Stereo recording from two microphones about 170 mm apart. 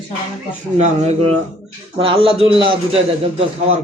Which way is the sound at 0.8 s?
40° right (ahead or behind).